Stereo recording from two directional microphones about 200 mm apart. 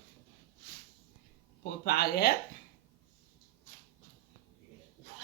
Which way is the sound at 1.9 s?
55° left (ahead or behind).